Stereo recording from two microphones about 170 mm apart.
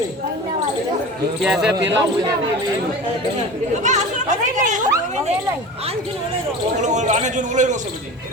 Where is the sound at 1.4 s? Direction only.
5° right (ahead or behind).